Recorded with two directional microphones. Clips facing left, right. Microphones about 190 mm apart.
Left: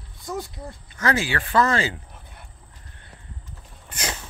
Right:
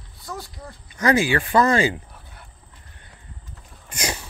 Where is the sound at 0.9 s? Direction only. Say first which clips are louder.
Right 5 dB; 15° right (ahead or behind).